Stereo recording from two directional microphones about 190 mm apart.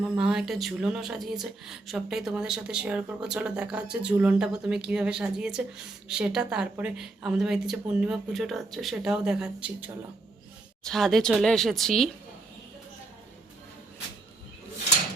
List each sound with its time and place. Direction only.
0.2 s speech: 5° right (ahead or behind)